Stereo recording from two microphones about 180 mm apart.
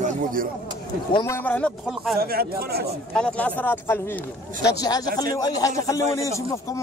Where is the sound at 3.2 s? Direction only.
5° left (ahead or behind).